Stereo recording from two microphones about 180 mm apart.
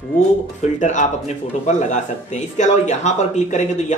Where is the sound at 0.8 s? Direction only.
45° left (ahead or behind).